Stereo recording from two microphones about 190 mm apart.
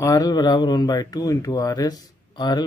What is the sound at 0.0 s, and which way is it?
Speech, 20° left (ahead or behind).